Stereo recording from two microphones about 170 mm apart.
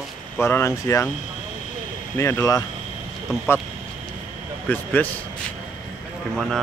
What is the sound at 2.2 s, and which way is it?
Speech, 15° left (ahead or behind).